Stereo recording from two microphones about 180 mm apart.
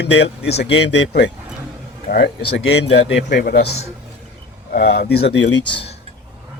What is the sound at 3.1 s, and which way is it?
Speech, 60° left (ahead or behind).